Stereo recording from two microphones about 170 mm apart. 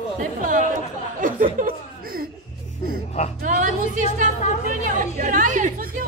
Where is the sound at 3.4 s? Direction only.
50° right (ahead or behind).